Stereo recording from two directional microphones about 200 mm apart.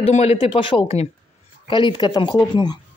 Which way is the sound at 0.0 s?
30° left (ahead or behind).